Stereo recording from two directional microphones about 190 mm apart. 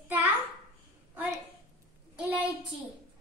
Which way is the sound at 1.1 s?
10° right (ahead or behind).